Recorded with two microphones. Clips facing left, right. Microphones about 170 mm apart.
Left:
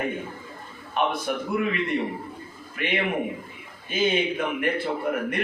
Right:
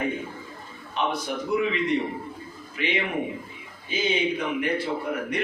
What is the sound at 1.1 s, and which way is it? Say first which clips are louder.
A man's voice: even; 55° left (ahead or behind).